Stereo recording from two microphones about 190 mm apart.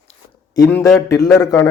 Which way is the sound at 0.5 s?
15° left (ahead or behind).